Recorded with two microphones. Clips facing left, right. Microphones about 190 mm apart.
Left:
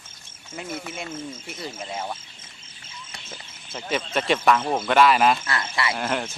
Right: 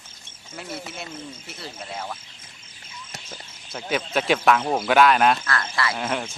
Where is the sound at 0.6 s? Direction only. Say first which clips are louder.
Left 2 dB; 5° right (ahead or behind).